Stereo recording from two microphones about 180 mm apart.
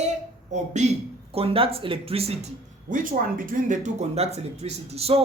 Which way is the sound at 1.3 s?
30° right (ahead or behind).